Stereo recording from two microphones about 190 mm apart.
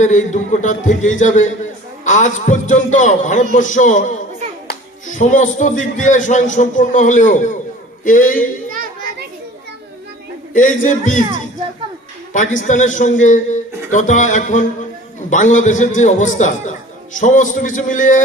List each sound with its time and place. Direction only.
0.0 s speech: 40° left (ahead or behind)
8.7 s children playing: 45° right (ahead or behind)
10.5 s speech: 40° left (ahead or behind)
12.3 s speech: 40° left (ahead or behind)